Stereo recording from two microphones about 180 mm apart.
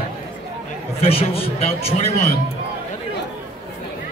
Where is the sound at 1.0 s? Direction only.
30° left (ahead or behind).